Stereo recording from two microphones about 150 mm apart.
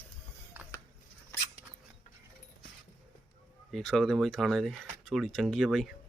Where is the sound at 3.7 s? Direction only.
5° left (ahead or behind).